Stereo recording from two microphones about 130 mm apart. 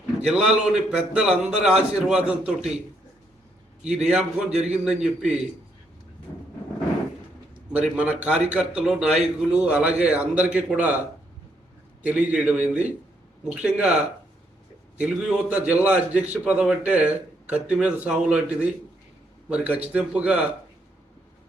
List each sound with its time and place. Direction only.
0.2 s a man's voice: 5° right (ahead or behind)
3.8 s a man's voice: 5° right (ahead or behind)
7.7 s speech: 10° right (ahead or behind)
12.0 s speech: 10° right (ahead or behind)
14.9 s speech: 10° right (ahead or behind)